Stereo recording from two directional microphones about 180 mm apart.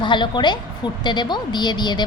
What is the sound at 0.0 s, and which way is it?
Speech, 25° left (ahead or behind).